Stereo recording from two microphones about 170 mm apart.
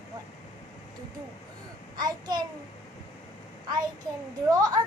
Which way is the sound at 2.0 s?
25° right (ahead or behind).